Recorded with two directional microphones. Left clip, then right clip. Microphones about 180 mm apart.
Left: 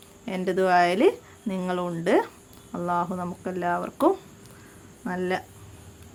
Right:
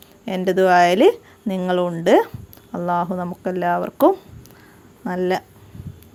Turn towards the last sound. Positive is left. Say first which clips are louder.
# right 6 dB
turn(degrees=-40)  # may be behind; listen again after turning